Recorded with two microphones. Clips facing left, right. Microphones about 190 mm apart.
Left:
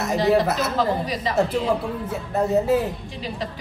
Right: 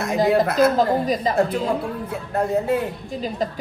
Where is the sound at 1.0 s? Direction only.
45° right (ahead or behind).